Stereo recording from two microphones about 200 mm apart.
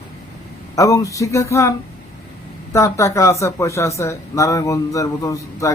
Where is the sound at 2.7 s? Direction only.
15° left (ahead or behind).